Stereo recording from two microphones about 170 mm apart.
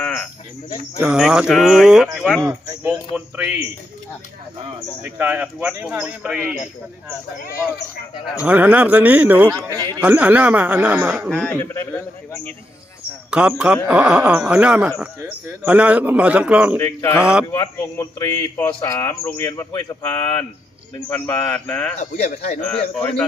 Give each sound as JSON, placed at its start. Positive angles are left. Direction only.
{"t": 0.0, "sound": "cricket", "side_deg": 5}
{"t": 1.0, "sound": "speech", "side_deg": -5}
{"t": 2.4, "sound": "speech", "side_deg": -15}
{"t": 5.0, "sound": "speech", "side_deg": -10}
{"t": 8.4, "sound": "speech", "side_deg": -10}
{"t": 9.6, "sound": "speech", "side_deg": 15}
{"t": 10.0, "sound": "speech", "side_deg": -10}
{"t": 11.3, "sound": "speech", "side_deg": 10}
{"t": 13.3, "sound": "speech", "side_deg": -5}
{"t": 16.7, "sound": "speech", "side_deg": 15}
{"t": 17.2, "sound": "speech", "side_deg": -5}
{"t": 17.5, "sound": "speech", "side_deg": 15}
{"t": 22.2, "sound": "a man's voice", "side_deg": 45}
{"t": 22.6, "sound": "speech", "side_deg": 5}